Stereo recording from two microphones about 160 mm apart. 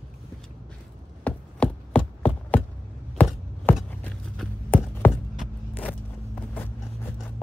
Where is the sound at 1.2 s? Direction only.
5° left (ahead or behind).